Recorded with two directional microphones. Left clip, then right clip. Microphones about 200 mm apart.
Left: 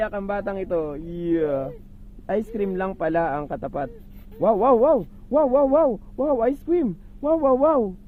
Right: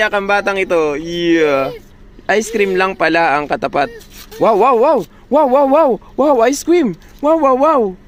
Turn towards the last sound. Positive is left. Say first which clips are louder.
# right 7 dB
turn(degrees=-10)  # may be behind; listen again after turning